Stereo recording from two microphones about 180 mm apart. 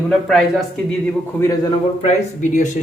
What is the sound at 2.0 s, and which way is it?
Speech, 45° left (ahead or behind).